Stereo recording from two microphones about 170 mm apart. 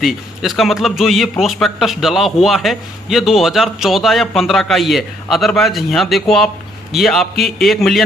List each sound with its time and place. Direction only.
0.0 s a man's voice: centre (ahead or behind)